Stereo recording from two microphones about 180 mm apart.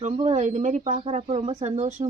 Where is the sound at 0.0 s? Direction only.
40° right (ahead or behind).